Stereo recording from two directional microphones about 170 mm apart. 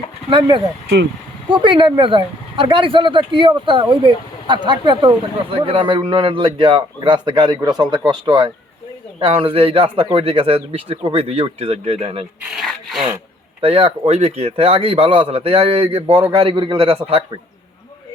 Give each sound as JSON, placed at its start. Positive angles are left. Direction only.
{"t": 0.3, "sound": "speech", "side_deg": -30}
{"t": 12.5, "sound": "rub", "side_deg": 0}
{"t": 13.6, "sound": "speech", "side_deg": -35}